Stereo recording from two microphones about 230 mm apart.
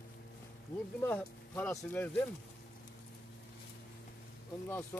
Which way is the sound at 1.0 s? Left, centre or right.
Centre.